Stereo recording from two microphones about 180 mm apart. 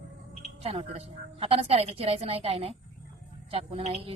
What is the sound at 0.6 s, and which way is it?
A woman's voice, 35° right (ahead or behind).